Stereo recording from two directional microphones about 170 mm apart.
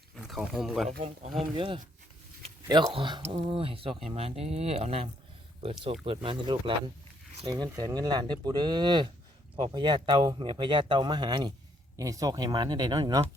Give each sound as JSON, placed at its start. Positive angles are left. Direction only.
{"t": 0.2, "sound": "speech", "side_deg": 0}
{"t": 1.5, "sound": "speech", "side_deg": -30}